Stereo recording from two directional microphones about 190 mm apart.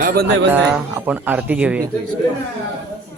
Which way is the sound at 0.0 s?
55° right (ahead or behind).